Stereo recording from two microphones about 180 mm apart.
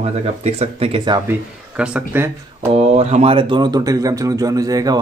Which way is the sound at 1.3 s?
5° right (ahead or behind).